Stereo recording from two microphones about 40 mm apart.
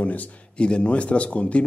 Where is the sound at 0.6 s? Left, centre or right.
Left.